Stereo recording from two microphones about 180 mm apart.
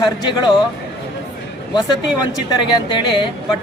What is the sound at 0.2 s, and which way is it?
Speech, 25° left (ahead or behind).